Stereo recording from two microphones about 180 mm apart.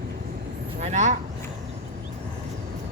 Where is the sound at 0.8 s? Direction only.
40° right (ahead or behind).